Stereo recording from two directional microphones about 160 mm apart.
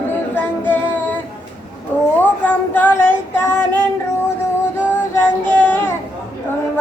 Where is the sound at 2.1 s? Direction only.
10° left (ahead or behind).